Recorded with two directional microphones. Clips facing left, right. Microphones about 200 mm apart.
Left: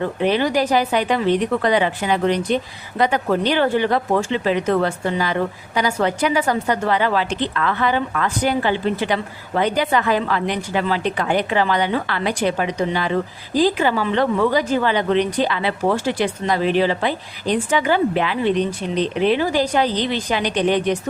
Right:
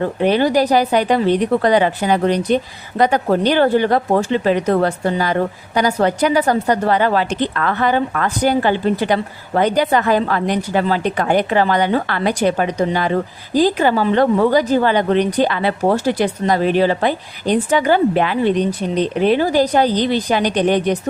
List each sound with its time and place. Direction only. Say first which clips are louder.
0.0 s a woman's voice: right 3 dB; 45° right (ahead or behind)